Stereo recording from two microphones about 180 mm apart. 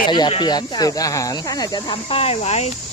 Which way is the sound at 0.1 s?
25° left (ahead or behind).